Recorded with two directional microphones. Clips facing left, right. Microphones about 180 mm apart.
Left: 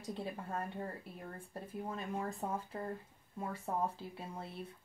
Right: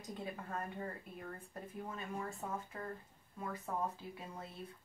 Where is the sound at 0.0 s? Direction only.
30° left (ahead or behind).